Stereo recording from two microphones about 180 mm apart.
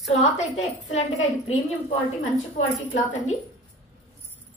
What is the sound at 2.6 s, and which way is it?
Speech, 40° left (ahead or behind).